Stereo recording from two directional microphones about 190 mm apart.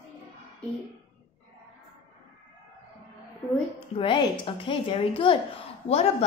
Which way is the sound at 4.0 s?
25° left (ahead or behind).